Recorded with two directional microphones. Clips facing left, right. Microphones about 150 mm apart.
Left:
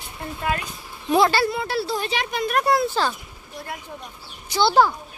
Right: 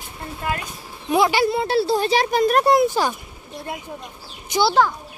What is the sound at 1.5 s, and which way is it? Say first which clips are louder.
Speech: right 6 dB; 25° right (ahead or behind).